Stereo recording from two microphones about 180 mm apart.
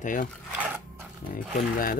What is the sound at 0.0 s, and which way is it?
Speech, 45° left (ahead or behind).